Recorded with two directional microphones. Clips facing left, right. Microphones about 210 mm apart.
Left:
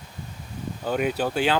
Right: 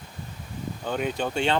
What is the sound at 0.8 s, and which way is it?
Speech, 5° left (ahead or behind).